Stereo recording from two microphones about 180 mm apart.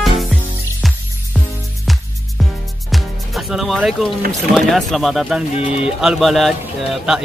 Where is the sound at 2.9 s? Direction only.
Centre (ahead or behind).